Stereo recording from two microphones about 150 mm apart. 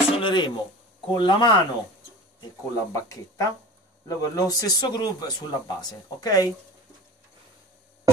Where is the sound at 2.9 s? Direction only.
20° left (ahead or behind).